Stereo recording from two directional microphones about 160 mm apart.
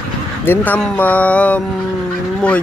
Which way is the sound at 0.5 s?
5° left (ahead or behind).